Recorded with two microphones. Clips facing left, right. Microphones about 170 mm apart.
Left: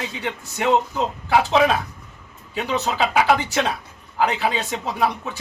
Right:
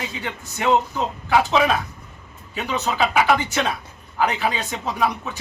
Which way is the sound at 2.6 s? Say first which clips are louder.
Even; 30° left (ahead or behind).